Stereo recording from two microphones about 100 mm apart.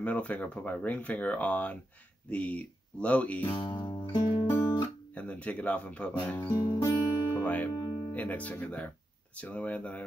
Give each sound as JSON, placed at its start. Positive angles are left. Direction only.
{"t": 0.0, "sound": "speech", "side_deg": 15}
{"t": 3.4, "sound": "music", "side_deg": 50}
{"t": 5.1, "sound": "speech", "side_deg": 10}
{"t": 6.3, "sound": "speech", "side_deg": 30}
{"t": 6.6, "sound": "music", "side_deg": 45}
{"t": 7.4, "sound": "speech", "side_deg": 15}
{"t": 7.7, "sound": "music", "side_deg": 40}
{"t": 8.1, "sound": "speech", "side_deg": 15}